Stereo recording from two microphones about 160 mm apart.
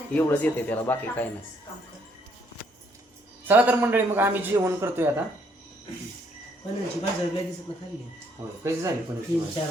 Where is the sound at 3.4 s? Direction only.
10° right (ahead or behind).